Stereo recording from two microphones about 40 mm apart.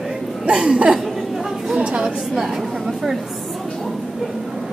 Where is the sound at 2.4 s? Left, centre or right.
Centre.